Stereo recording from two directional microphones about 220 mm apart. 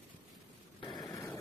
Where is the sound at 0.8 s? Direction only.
20° left (ahead or behind).